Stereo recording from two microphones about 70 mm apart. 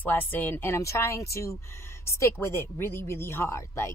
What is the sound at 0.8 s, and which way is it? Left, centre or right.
Speech, left.